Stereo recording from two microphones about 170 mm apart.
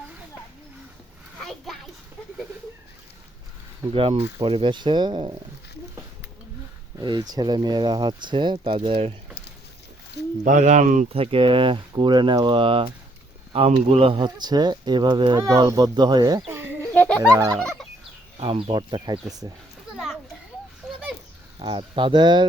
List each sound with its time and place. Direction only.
1.4 s a sound: centre (ahead or behind)
3.9 s speech: 35° right (ahead or behind)
7.0 s speech: 25° right (ahead or behind)
10.4 s speech: 45° right (ahead or behind); by 16.7 s 15° right (ahead or behind)
16.9 s music: 10° left (ahead or behind)
17.2 s turkey: 15° right (ahead or behind)
17.6 s gobble: 5° left (ahead or behind)
18.3 s speech: 35° right (ahead or behind)
21.6 s speech: 30° right (ahead or behind)